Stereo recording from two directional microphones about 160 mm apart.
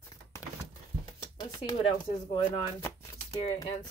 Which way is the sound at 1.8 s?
30° left (ahead or behind).